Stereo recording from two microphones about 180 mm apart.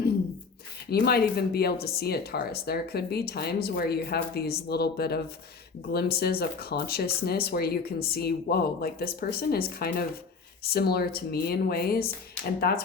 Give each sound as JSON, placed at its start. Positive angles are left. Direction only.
{"t": 0.9, "sound": "speech", "side_deg": 60}